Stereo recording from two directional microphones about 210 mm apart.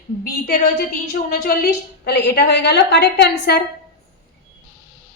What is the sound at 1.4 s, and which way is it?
A woman's voice, 50° left (ahead or behind).